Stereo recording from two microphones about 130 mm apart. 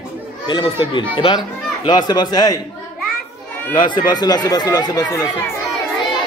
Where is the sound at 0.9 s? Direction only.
40° left (ahead or behind).